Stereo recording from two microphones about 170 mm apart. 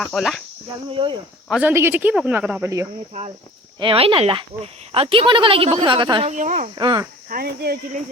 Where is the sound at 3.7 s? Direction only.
30° right (ahead or behind).